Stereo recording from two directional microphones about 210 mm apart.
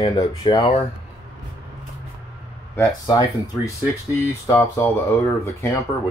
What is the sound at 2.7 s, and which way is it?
Speech, 15° left (ahead or behind).